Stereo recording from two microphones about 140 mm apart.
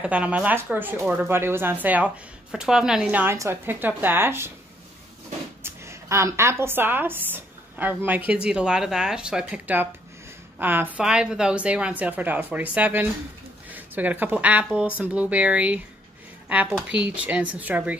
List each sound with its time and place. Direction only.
0.0 s speech: 10° right (ahead or behind)
5.6 s a woman's voice: 20° right (ahead or behind)
17.1 s speech: 10° right (ahead or behind)